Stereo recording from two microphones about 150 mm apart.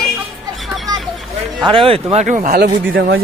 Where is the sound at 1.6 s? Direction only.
35° right (ahead or behind); by 2.7 s 70° right (ahead or behind).